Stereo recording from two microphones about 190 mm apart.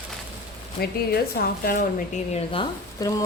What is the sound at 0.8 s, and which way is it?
Speech, 55° left (ahead or behind).